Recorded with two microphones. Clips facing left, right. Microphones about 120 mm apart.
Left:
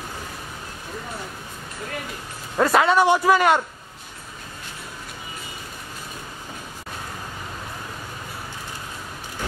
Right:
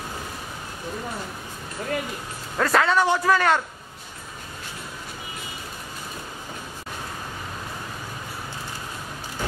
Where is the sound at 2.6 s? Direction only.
15° left (ahead or behind).